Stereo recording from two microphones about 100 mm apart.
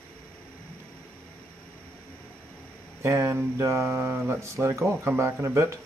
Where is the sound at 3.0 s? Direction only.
25° right (ahead or behind).